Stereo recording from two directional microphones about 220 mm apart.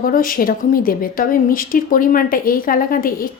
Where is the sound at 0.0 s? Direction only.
40° left (ahead or behind).